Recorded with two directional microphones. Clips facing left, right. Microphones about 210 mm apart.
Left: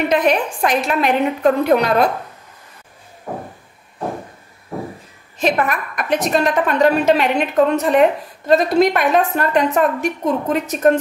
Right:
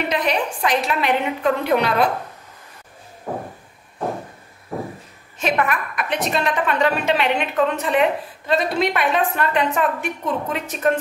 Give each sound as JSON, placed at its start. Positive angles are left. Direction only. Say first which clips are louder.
{"t": 0.1, "sound": "a woman's voice", "louder": "left 5 dB", "side_deg": 50}
{"t": 5.4, "sound": "a woman's voice", "louder": "left 3 dB", "side_deg": 40}